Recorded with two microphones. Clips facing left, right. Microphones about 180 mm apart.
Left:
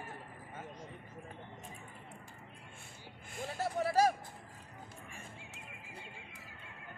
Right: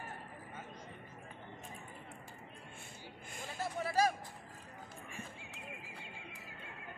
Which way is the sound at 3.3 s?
70° left (ahead or behind).